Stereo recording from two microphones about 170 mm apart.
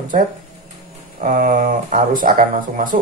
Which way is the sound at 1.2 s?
50° right (ahead or behind).